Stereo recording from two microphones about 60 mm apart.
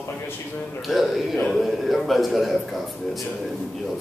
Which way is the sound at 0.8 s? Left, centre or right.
Centre.